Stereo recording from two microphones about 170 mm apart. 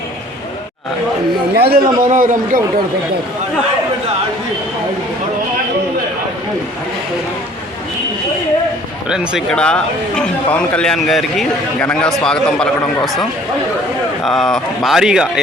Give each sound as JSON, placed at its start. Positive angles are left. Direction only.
{"t": 1.5, "sound": "a man's voice", "side_deg": -65}
{"t": 2.0, "sound": "a man's voice", "side_deg": -50}
{"t": 9.0, "sound": "a man's voice", "side_deg": -5}
{"t": 14.3, "sound": "a man's voice", "side_deg": 0}